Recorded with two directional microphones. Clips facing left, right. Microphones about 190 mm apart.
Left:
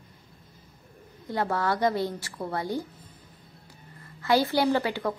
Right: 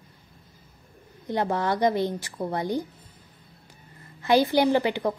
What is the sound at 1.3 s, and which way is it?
A woman's voice, 20° right (ahead or behind).